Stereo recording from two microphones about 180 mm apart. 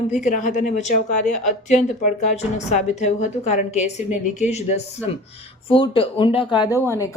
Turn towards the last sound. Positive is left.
turn(degrees=15)  # may be behind; listen again after turning